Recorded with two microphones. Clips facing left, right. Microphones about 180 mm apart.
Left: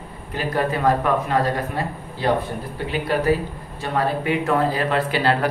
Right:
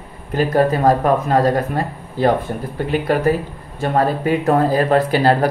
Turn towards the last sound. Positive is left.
turn(degrees=-40)  # may be behind; listen again after turning